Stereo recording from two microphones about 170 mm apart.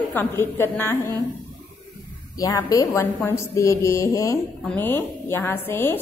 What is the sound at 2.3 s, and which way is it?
A woman's voice, 20° left (ahead or behind).